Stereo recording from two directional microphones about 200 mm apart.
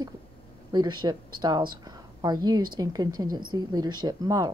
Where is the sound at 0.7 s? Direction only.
20° right (ahead or behind).